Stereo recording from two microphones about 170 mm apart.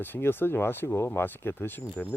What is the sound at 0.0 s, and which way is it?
Speech, 10° left (ahead or behind).